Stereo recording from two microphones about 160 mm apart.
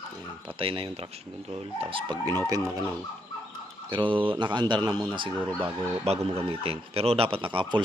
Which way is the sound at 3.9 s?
30° right (ahead or behind).